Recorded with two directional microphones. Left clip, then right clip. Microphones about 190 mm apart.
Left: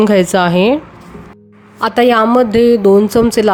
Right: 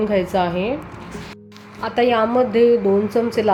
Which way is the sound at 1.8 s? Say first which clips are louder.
Left 7 dB; 40° left (ahead or behind).